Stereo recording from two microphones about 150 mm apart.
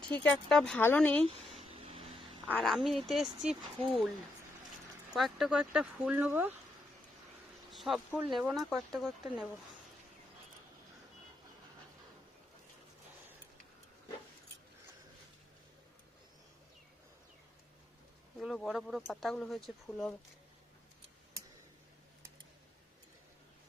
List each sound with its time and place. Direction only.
0.1 s speech: 10° left (ahead or behind)
1.6 s vehicle: 40° right (ahead or behind)
2.5 s speech: 5° left (ahead or behind)
5.1 s speech: centre (ahead or behind)
7.7 s speech: centre (ahead or behind)
18.3 s speech: centre (ahead or behind)